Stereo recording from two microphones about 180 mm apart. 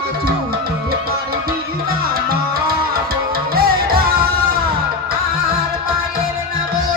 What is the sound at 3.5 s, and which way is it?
Music, 55° right (ahead or behind).